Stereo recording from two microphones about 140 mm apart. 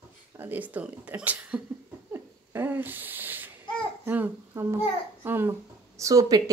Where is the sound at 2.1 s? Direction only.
15° right (ahead or behind).